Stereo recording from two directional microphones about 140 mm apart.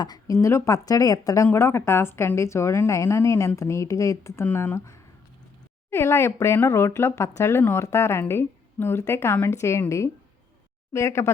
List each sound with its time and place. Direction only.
0.0 s a woman's voice: 30° left (ahead or behind)